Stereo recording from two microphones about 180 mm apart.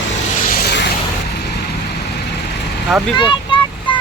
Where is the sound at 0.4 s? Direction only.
60° left (ahead or behind).